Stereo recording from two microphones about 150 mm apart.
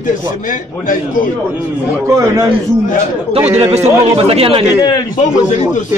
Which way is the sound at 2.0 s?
20° right (ahead or behind).